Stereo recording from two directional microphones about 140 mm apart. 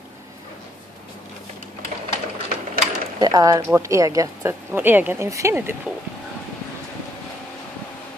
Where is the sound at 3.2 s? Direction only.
25° right (ahead or behind).